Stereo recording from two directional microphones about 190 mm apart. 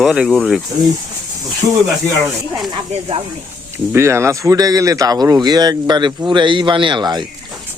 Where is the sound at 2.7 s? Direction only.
30° right (ahead or behind).